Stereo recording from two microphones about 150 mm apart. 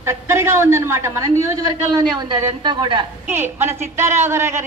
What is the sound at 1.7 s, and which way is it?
A man's voice, 30° right (ahead or behind).